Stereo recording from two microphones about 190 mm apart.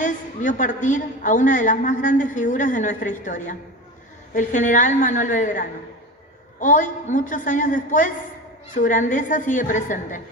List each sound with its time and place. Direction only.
0.0 s a woman's voice: 40° left (ahead or behind)